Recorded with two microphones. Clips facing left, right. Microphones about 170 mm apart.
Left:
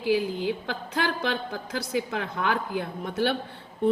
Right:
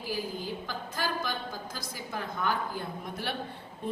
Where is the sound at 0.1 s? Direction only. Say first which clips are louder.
Left 10 dB; 70° left (ahead or behind).